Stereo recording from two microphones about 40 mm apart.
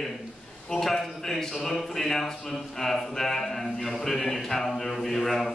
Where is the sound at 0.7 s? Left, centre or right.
Centre.